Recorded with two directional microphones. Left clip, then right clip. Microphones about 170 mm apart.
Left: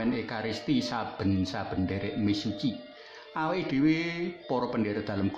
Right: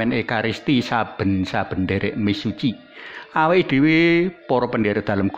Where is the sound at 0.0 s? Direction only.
35° right (ahead or behind).